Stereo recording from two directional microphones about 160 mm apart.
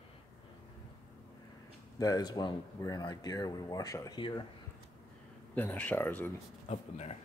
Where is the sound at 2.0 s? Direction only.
25° left (ahead or behind).